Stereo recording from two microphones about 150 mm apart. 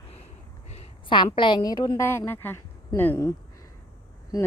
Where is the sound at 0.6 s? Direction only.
40° left (ahead or behind).